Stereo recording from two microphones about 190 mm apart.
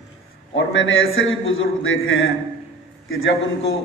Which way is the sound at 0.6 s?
90° left.